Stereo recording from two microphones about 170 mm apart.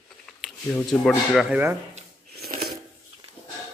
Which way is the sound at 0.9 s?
Centre (ahead or behind).